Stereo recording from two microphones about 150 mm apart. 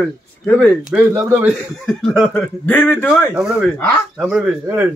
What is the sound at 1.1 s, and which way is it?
Speech, 15° right (ahead or behind).